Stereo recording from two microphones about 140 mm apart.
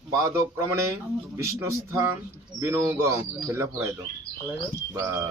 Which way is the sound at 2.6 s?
20° right (ahead or behind).